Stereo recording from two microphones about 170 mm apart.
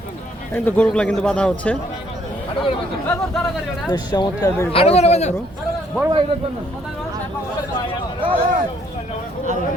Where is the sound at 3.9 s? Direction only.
25° left (ahead or behind).